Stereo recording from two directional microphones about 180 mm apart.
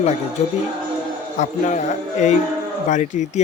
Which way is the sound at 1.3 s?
45° left (ahead or behind).